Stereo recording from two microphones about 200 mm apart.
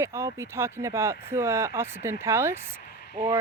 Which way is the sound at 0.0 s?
15° right (ahead or behind).